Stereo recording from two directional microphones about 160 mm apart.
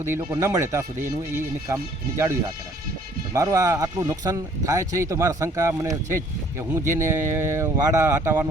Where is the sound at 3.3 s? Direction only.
20° right (ahead or behind).